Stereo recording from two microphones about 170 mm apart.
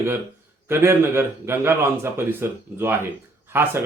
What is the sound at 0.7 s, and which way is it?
Speech, 15° right (ahead or behind).